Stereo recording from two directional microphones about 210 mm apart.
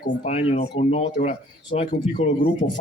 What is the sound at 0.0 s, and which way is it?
A man's voice, 30° left (ahead or behind).